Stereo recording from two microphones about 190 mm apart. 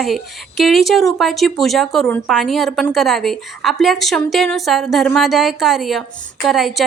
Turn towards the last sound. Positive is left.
turn(degrees=0)  # may be behind; listen again after turning